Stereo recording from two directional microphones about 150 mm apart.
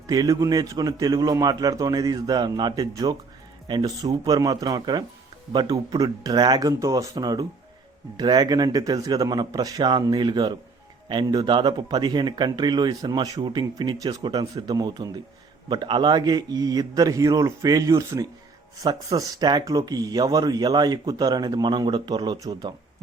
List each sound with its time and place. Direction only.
0.1 s speech: 25° right (ahead or behind)